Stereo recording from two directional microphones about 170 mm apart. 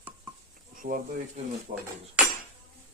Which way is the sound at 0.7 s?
55° right (ahead or behind).